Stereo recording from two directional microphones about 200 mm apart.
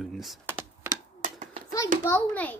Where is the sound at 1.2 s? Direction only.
40° right (ahead or behind).